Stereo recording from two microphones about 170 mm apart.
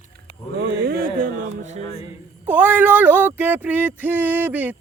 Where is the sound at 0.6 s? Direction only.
65° right (ahead or behind).